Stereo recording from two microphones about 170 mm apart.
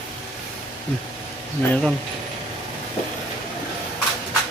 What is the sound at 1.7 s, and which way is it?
Speech, 5° left (ahead or behind).